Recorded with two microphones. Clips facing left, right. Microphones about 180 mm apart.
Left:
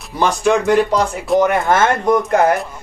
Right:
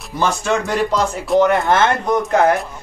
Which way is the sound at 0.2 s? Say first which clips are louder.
Left 4 dB; 15° left (ahead or behind).